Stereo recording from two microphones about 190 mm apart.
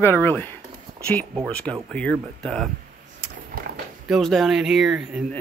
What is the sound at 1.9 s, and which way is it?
Speech, 5° left (ahead or behind).